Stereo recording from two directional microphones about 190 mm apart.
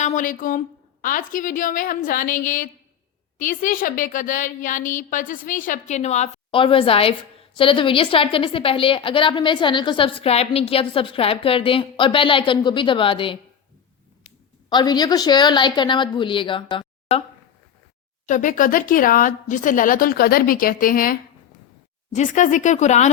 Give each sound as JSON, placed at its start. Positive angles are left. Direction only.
{"t": 0.0, "sound": "a woman's voice", "side_deg": 40}
{"t": 14.7, "sound": "a woman's voice", "side_deg": 20}
{"t": 18.3, "sound": "speech", "side_deg": 45}